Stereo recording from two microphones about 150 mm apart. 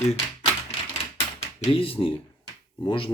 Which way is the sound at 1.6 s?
40° left (ahead or behind).